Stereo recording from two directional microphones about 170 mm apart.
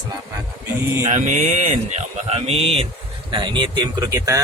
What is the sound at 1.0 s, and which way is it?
Speech, 45° right (ahead or behind).